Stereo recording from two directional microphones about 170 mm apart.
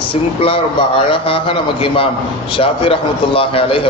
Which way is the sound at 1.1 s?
30° left (ahead or behind).